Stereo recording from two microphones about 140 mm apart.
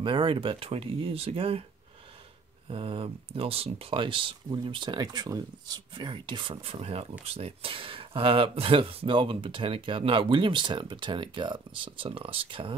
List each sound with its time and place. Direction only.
0.0 s speech: 35° right (ahead or behind)
2.7 s speech: 40° right (ahead or behind)